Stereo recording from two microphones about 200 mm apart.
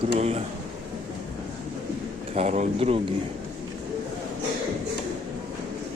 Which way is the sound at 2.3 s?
35° right (ahead or behind).